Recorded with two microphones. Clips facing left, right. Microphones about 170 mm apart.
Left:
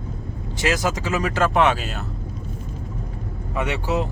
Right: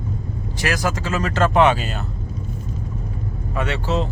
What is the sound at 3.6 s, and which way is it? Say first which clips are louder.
Speech: right 1 dB; 15° left (ahead or behind).